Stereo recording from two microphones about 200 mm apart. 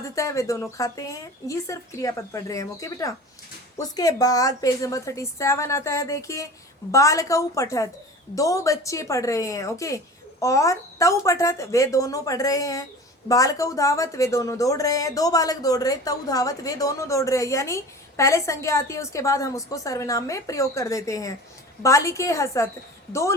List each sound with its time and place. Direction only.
0.2 s speech: 15° left (ahead or behind)